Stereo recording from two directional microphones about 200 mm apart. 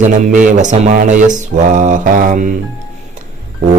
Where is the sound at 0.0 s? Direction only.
40° right (ahead or behind).